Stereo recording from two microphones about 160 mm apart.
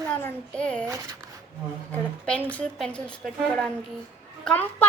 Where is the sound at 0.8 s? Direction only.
20° right (ahead or behind).